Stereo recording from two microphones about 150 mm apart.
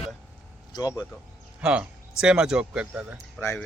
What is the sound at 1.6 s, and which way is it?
Speech, 5° right (ahead or behind).